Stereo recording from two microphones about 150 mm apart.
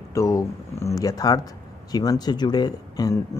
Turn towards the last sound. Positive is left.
turn(degrees=25)  # may be behind; listen again after turning